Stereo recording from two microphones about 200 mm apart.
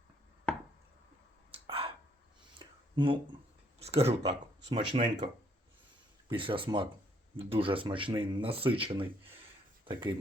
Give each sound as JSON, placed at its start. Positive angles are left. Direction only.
{"t": 1.5, "sound": "a sound", "side_deg": -30}
{"t": 3.8, "sound": "speech", "side_deg": -30}
{"t": 6.2, "sound": "speech", "side_deg": -25}